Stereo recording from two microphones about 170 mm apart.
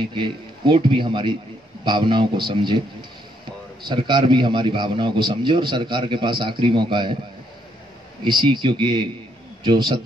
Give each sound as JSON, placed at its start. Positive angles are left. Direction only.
{"t": 0.1, "sound": "a man's voice", "side_deg": -30}
{"t": 8.2, "sound": "a man's voice", "side_deg": -25}